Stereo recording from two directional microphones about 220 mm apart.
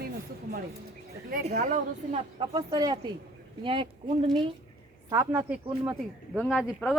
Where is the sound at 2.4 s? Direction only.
15° right (ahead or behind).